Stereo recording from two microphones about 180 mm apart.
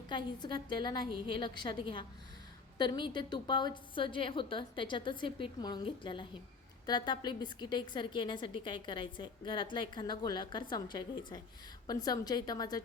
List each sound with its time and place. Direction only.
0.1 s a woman's voice: 25° left (ahead or behind)